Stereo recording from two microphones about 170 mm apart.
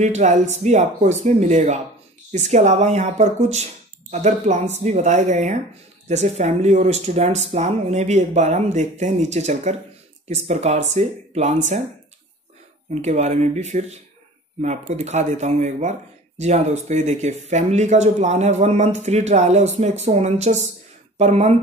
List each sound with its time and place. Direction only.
0.0 s speech: 40° right (ahead or behind)
13.0 s speech: 40° right (ahead or behind)